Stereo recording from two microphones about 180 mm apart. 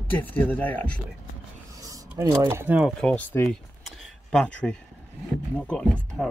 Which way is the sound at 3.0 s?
10° left (ahead or behind).